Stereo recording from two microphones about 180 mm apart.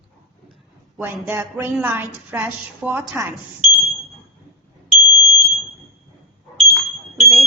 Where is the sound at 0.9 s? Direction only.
10° right (ahead or behind).